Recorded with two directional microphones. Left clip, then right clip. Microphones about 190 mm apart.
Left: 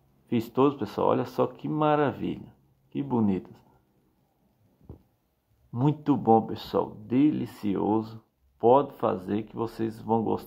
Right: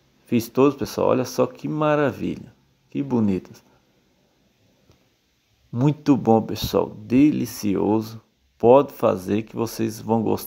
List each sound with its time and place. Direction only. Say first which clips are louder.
0.3 s speech: right 5 dB; 25° right (ahead or behind)
5.7 s speech: right 6 dB; 25° right (ahead or behind)